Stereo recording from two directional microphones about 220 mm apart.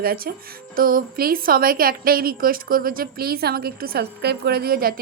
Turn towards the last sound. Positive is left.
turn(degrees=-40)  # may be behind; listen again after turning